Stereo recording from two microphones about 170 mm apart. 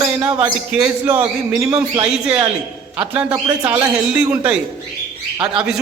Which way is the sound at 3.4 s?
25° right (ahead or behind).